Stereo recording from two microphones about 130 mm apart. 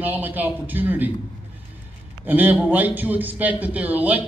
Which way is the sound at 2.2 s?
15° right (ahead or behind).